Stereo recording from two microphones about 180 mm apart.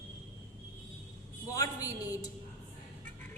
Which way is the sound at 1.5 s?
20° left (ahead or behind).